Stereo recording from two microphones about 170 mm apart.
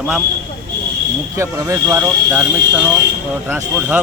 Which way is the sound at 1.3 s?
15° right (ahead or behind).